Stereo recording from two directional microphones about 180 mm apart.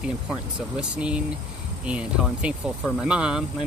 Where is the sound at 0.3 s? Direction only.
5° right (ahead or behind).